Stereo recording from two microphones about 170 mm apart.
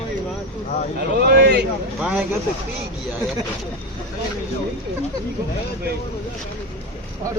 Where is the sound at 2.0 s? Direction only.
10° right (ahead or behind).